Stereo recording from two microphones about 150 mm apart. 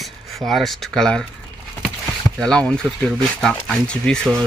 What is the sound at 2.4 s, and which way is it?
Speech, 5° left (ahead or behind).